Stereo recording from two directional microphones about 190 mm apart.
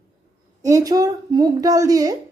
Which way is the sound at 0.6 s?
20° right (ahead or behind).